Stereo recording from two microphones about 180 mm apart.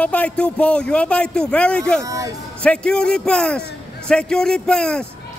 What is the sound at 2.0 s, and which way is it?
Speech, 20° right (ahead or behind).